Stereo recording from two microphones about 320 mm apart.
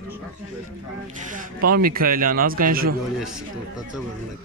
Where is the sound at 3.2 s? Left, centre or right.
Centre.